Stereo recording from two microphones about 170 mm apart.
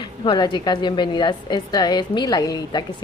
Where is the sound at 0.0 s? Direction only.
25° left (ahead or behind).